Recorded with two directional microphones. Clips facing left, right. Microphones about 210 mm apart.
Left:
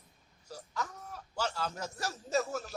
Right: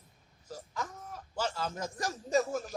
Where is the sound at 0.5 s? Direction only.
10° right (ahead or behind).